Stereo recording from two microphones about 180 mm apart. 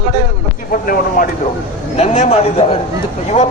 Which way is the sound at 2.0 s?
35° left (ahead or behind).